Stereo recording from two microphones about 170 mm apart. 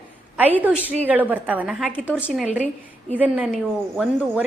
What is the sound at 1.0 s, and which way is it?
A woman's voice, 10° right (ahead or behind).